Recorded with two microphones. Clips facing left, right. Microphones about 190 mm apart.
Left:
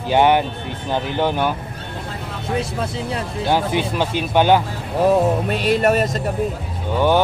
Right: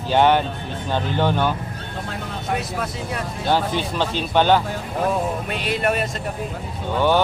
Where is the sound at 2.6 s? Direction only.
25° left (ahead or behind).